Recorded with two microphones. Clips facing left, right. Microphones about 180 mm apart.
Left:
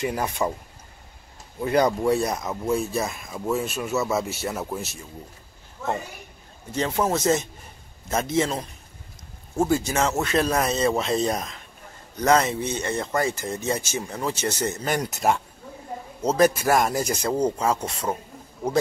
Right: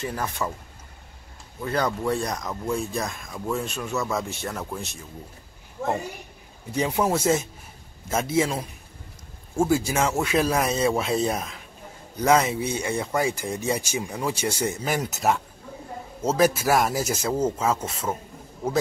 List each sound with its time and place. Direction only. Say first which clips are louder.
0.0 s speech: left 4 dB; 15° left (ahead or behind)
1.6 s speech: left 5 dB; 15° left (ahead or behind)
6.7 s speech: even; 10° right (ahead or behind)